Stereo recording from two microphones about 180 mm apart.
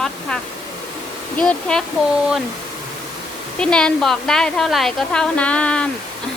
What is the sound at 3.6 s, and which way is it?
A woman's voice, 5° left (ahead or behind).